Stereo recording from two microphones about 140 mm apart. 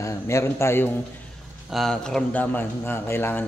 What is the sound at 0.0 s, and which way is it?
Speech, 20° left (ahead or behind).